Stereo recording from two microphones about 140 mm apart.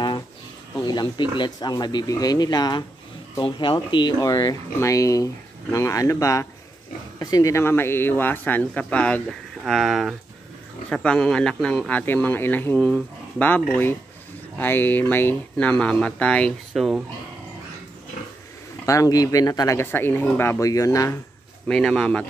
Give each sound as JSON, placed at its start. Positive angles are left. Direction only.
{"t": 0.8, "sound": "speech", "side_deg": 30}
{"t": 12.7, "sound": "speech", "side_deg": 5}
{"t": 18.9, "sound": "speech", "side_deg": 25}
{"t": 19.8, "sound": "speech", "side_deg": 15}
{"t": 21.6, "sound": "speech", "side_deg": 5}